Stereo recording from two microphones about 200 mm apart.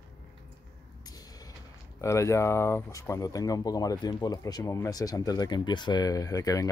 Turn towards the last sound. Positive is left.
turn(degrees=15)  # may be behind; listen again after turning